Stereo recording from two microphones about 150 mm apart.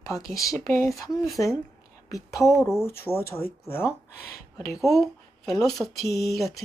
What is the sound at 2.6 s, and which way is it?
Speech, 15° left (ahead or behind).